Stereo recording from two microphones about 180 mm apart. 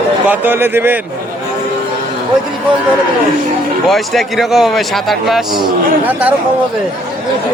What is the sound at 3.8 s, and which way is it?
Speech, centre (ahead or behind).